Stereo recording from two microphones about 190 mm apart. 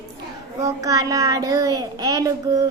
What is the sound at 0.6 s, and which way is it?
A child's voice, 15° right (ahead or behind).